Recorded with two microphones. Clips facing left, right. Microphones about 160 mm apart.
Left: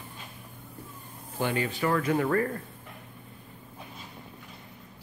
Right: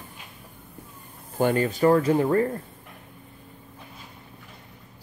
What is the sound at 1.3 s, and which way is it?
Speech, 45° right (ahead or behind).